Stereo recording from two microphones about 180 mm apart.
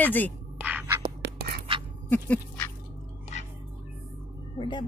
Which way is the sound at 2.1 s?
10° left (ahead or behind).